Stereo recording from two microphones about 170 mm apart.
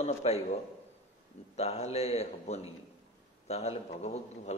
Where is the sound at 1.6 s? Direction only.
40° left (ahead or behind).